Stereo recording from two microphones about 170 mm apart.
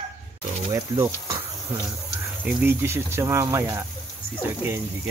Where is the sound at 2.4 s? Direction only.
10° right (ahead or behind).